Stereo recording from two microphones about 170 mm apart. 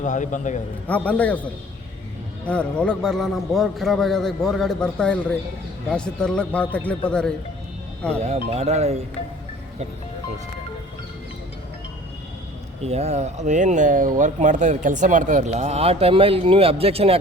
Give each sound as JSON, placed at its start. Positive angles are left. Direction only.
{"t": 0.0, "sound": "a man's voice", "side_deg": 45}
{"t": 0.9, "sound": "a man's voice", "side_deg": 10}
{"t": 2.5, "sound": "a man's voice", "side_deg": 5}
{"t": 8.2, "sound": "speech", "side_deg": -40}
{"t": 12.8, "sound": "speech", "side_deg": -40}